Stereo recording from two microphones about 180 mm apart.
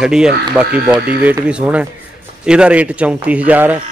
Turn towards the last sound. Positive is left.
turn(degrees=-10)  # may be behind; listen again after turning